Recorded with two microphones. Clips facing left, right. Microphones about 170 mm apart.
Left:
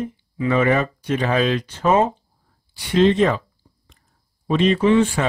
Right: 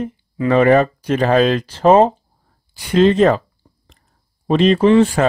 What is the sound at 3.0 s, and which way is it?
Speech, 40° right (ahead or behind).